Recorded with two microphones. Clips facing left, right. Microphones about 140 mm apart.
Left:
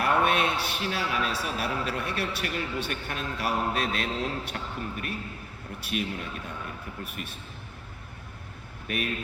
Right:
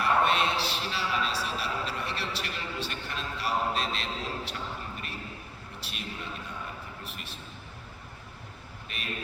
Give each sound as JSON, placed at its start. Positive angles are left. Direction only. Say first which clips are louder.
{"t": 0.0, "sound": "a man's voice", "louder": "left 1 dB", "side_deg": 55}
{"t": 8.9, "sound": "a man's voice", "louder": "left 13 dB", "side_deg": 55}